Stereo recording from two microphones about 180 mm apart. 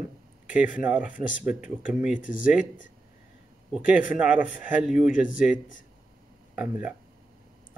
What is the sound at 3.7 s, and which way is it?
Speech, 5° right (ahead or behind).